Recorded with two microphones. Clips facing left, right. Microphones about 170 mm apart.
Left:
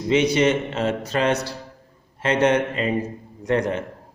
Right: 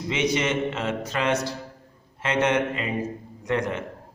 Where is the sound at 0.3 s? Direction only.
35° left (ahead or behind).